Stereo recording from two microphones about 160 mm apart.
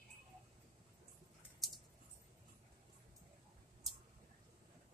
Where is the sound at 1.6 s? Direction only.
Centre (ahead or behind).